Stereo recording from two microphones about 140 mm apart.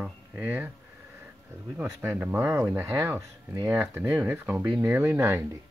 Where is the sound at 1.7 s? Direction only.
15° right (ahead or behind).